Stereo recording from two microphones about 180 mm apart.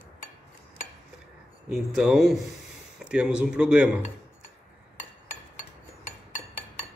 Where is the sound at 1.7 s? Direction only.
5° right (ahead or behind).